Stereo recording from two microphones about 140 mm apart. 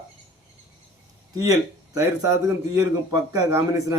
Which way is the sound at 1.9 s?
25° right (ahead or behind).